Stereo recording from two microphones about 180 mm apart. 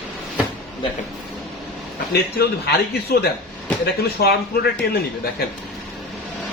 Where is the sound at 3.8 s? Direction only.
60° left (ahead or behind).